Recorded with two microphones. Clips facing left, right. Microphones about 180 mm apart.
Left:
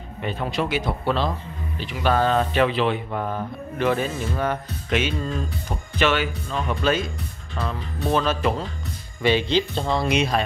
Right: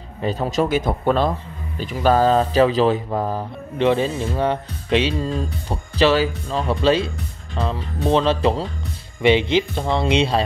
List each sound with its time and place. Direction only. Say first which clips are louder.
0.2 s a man's voice: right 5 dB; 40° right (ahead or behind)
1.8 s mantra: right 5 dB; 40° right (ahead or behind)
7.5 s speech: right 4 dB; 25° right (ahead or behind)